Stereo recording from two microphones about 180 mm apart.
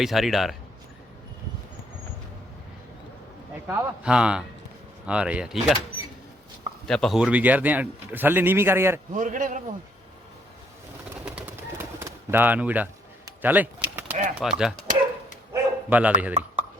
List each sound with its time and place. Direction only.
0.0 s speech: centre (ahead or behind)
3.7 s speech: 10° right (ahead or behind)
6.8 s speech: centre (ahead or behind); by 9.0 s 15° right (ahead or behind)
9.1 s a man's voice: 45° right (ahead or behind)
11.3 s bird: 15° right (ahead or behind)
13.2 s a sound: 10° right (ahead or behind)
14.3 s speech: 5° right (ahead or behind)
15.5 s bow-wow: 10° right (ahead or behind)